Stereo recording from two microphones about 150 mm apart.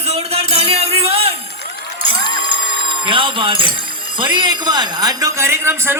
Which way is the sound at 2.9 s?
35° right (ahead or behind).